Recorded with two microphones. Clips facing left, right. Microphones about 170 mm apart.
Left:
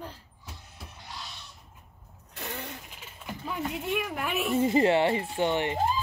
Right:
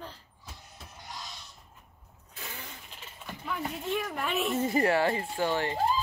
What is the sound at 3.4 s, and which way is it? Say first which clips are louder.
Speech: left 2 dB; 20° left (ahead or behind).